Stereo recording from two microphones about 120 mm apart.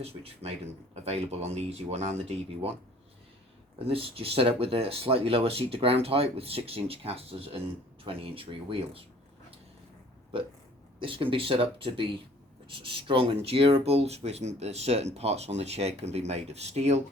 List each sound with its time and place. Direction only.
0.0 s speech: 55° right (ahead or behind)
3.8 s speech: 50° right (ahead or behind)
10.3 s speech: 50° right (ahead or behind)